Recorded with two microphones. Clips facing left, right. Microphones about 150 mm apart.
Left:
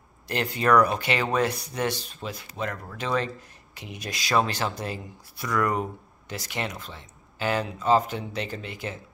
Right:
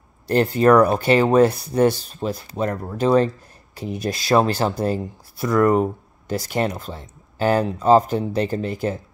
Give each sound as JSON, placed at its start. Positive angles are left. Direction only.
{"t": 0.3, "sound": "speech", "side_deg": -40}